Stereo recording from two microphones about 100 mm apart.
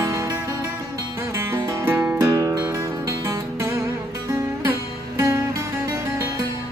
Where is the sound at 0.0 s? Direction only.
25° right (ahead or behind).